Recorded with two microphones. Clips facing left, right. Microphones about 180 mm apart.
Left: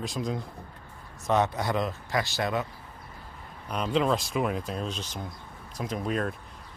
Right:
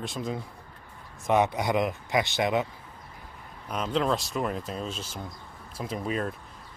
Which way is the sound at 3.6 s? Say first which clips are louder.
Left 1 dB; centre (ahead or behind).